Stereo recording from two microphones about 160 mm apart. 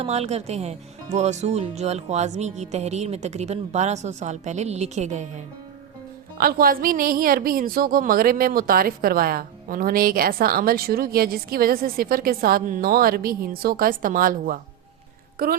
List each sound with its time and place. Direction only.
0.0 s speech: 40° right (ahead or behind)
6.3 s speech: 65° right (ahead or behind)